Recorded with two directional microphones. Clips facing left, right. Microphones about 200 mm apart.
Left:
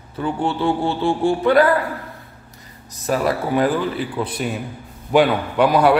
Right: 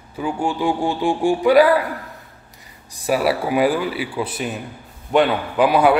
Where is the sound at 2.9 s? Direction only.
10° right (ahead or behind).